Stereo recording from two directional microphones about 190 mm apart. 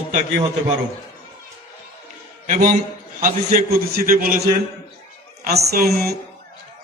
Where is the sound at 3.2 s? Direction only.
50° right (ahead or behind).